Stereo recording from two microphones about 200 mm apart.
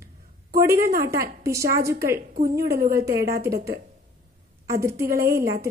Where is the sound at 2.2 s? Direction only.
45° right (ahead or behind).